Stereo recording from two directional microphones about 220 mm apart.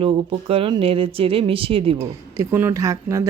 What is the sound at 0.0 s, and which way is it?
Speech, 25° right (ahead or behind).